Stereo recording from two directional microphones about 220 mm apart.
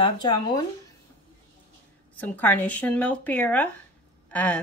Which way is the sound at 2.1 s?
5° left (ahead or behind).